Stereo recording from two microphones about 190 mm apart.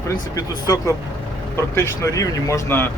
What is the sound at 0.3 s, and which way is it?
Speech, 20° left (ahead or behind).